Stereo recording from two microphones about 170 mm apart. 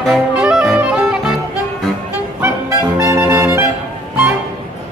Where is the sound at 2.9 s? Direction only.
20° right (ahead or behind).